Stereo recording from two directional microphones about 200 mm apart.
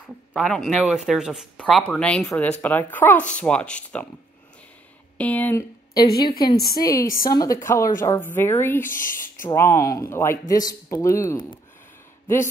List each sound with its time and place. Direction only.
0.0 s speech: 5° left (ahead or behind)
5.1 s speech: 5° left (ahead or behind)
6.5 s speech: 50° left (ahead or behind)
6.8 s speech: 15° left (ahead or behind)
8.9 s speech: 40° left (ahead or behind)
9.4 s speech: 15° left (ahead or behind)